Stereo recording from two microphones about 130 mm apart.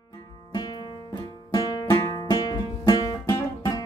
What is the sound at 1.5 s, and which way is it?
Music, 35° left (ahead or behind).